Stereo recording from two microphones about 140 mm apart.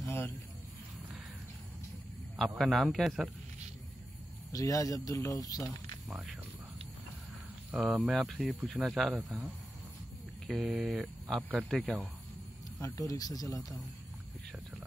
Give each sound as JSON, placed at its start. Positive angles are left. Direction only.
{"t": 0.0, "sound": "a sound", "side_deg": 15}
{"t": 2.3, "sound": "speech", "side_deg": 0}
{"t": 4.5, "sound": "speech", "side_deg": 25}
{"t": 5.6, "sound": "speech", "side_deg": 0}
{"t": 7.7, "sound": "speech", "side_deg": -5}
{"t": 12.8, "sound": "speech", "side_deg": 20}